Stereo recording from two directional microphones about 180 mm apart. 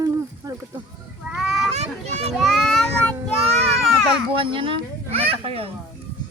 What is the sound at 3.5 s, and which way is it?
Children playing, 35° right (ahead or behind).